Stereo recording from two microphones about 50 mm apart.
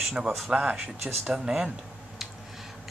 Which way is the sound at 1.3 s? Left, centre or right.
Centre.